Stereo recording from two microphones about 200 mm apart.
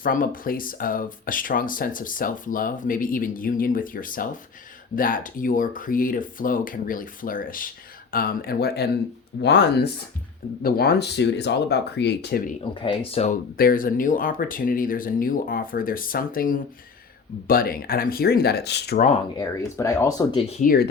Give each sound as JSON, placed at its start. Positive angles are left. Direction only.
{"t": 0.0, "sound": "speech", "side_deg": 45}
{"t": 12.8, "sound": "speech", "side_deg": 25}
{"t": 18.9, "sound": "speech", "side_deg": 35}
{"t": 19.4, "sound": "speech", "side_deg": 15}
{"t": 20.6, "sound": "speech", "side_deg": 50}